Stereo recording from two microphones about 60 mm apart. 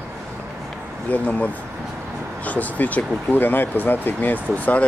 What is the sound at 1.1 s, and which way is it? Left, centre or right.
Speech, left.